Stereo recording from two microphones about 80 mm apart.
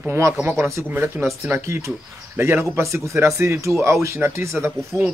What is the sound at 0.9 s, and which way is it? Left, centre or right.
Speech, right.